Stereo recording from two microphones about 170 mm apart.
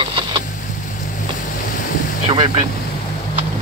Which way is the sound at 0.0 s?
30° right (ahead or behind).